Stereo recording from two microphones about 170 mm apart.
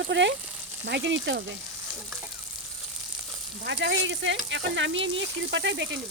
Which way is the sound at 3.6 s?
90° right.